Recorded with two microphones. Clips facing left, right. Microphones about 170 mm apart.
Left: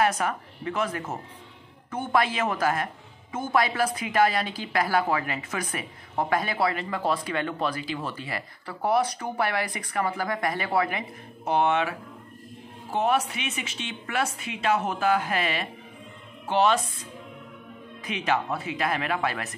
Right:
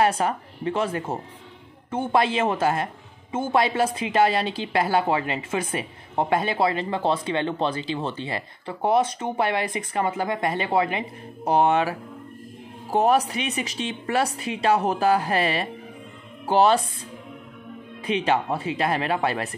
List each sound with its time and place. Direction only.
0.0 s a man's voice: 30° right (ahead or behind)
18.0 s a woman's voice: 30° right (ahead or behind)